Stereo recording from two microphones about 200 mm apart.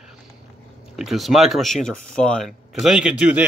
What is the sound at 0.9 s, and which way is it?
Speech, centre (ahead or behind).